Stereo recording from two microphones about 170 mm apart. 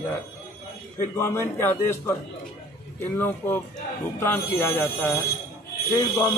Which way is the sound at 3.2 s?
10° left (ahead or behind).